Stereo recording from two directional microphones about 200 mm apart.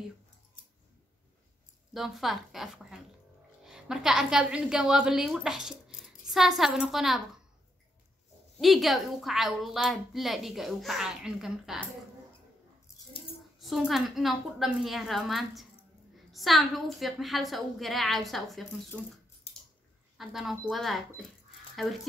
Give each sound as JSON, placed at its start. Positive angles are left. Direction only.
{"t": 2.0, "sound": "a woman's voice", "side_deg": 0}
{"t": 8.5, "sound": "a woman's voice", "side_deg": 0}
{"t": 13.6, "sound": "a woman's voice", "side_deg": 0}
{"t": 19.5, "sound": "a sound", "side_deg": 25}
{"t": 20.2, "sound": "a woman's voice", "side_deg": 0}